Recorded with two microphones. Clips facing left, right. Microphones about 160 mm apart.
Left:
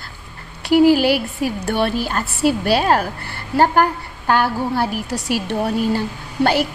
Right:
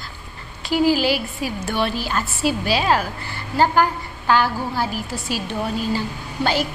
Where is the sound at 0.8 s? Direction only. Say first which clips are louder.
Left 5 dB; 60° left (ahead or behind).